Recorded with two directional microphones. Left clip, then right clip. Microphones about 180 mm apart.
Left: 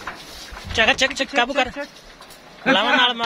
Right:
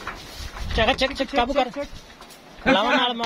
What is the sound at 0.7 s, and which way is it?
Speech, 10° right (ahead or behind).